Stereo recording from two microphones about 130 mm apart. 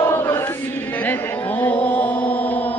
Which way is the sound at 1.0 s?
15° left (ahead or behind).